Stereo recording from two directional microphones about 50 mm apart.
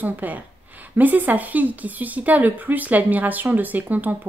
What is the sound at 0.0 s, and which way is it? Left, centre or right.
Speech, right.